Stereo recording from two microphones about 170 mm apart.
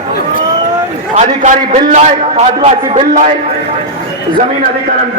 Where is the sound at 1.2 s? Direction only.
45° right (ahead or behind).